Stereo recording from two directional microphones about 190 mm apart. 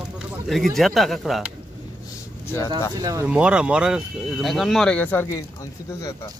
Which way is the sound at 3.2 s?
5° right (ahead or behind).